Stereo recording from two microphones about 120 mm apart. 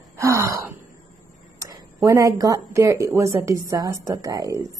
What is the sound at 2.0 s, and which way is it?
A woman's voice, 30° right (ahead or behind).